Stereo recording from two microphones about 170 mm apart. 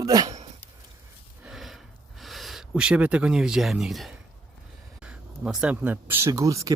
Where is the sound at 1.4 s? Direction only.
Centre (ahead or behind).